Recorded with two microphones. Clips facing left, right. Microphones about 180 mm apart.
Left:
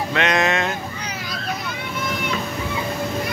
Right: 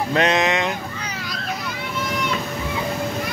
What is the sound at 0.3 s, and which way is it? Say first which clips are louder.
Speech: even; 20° right (ahead or behind).